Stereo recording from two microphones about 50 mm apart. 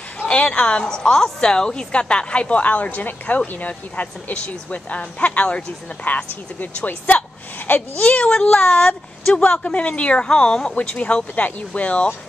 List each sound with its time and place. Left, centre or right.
0.3 s a woman's voice: centre; by 7.8 s left
8.0 s a woman's voice: left
9.3 s a woman's voice: left
10.7 s a woman's voice: left